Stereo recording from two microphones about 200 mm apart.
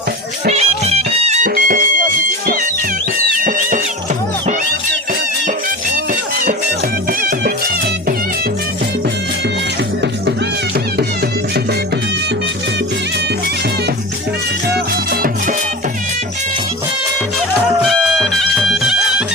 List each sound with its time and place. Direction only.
0.4 s music: 30° right (ahead or behind)
3.2 s music: 45° right (ahead or behind)
7.1 s music: 45° right (ahead or behind)
14.7 s music: 50° right (ahead or behind)
17.7 s music: centre (ahead or behind)